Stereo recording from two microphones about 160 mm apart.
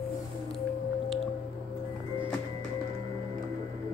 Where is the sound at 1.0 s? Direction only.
Centre (ahead or behind).